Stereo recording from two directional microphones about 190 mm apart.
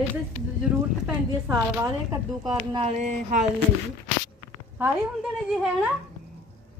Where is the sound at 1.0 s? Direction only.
10° right (ahead or behind).